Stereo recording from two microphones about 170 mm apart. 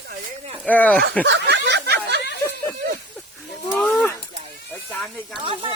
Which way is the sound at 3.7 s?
10° left (ahead or behind).